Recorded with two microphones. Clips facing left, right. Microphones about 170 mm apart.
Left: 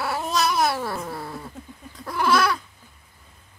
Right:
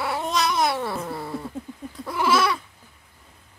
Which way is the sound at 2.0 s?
Centre (ahead or behind).